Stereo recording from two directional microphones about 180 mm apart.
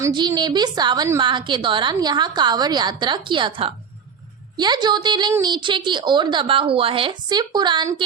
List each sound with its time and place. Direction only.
0.0 s a woman's voice: 25° right (ahead or behind)